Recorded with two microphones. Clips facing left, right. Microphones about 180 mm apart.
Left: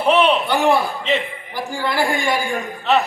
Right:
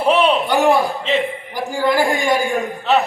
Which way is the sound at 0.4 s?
15° right (ahead or behind).